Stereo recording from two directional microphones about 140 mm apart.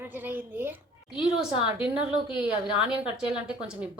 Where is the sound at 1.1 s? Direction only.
35° left (ahead or behind).